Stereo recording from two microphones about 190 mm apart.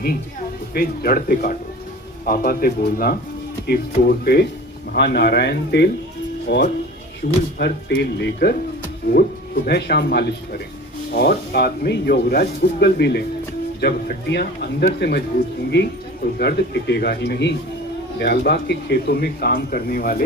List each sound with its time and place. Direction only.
0.7 s a man's voice: 50° left (ahead or behind); by 6.6 s 65° left (ahead or behind)
7.2 s a man's voice: 55° left (ahead or behind)
7.6 s speech: 65° left (ahead or behind)